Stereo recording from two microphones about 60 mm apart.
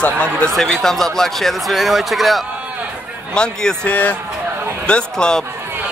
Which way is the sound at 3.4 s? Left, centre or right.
Centre.